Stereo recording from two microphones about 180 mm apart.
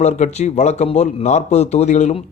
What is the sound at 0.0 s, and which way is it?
Speech, 40° left (ahead or behind).